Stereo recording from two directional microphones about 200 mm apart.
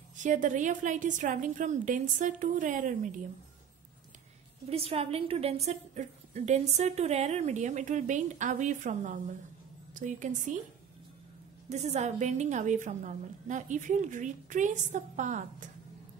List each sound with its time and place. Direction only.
0.1 s a woman's voice: 40° right (ahead or behind)
4.6 s a woman's voice: 30° right (ahead or behind)
11.7 s a woman's voice: 35° right (ahead or behind)